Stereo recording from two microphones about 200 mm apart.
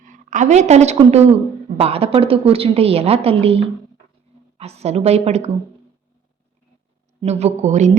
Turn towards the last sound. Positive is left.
turn(degrees=-35)  # may be behind; listen again after turning